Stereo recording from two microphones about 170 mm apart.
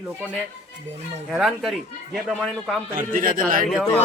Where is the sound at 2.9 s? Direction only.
55° right (ahead or behind).